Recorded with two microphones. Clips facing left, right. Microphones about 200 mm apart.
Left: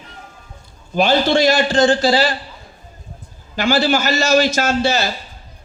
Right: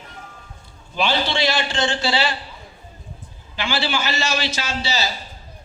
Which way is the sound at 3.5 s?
40° left (ahead or behind).